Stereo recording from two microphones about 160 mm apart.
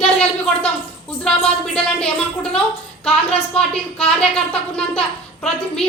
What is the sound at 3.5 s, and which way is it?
A woman's voice, 35° left (ahead or behind).